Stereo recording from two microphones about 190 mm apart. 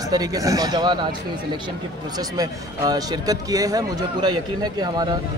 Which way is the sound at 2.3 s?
20° right (ahead or behind).